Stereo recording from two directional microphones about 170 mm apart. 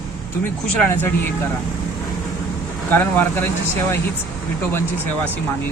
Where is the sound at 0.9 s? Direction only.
10° left (ahead or behind).